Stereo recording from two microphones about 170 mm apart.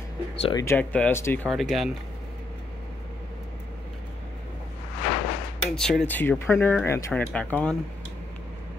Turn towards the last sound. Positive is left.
turn(degrees=10)  # may be behind; listen again after turning